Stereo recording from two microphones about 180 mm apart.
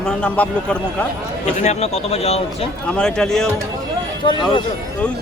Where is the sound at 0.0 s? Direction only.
5° left (ahead or behind).